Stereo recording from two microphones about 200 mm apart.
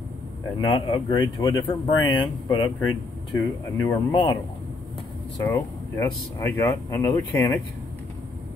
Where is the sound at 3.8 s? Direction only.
25° left (ahead or behind).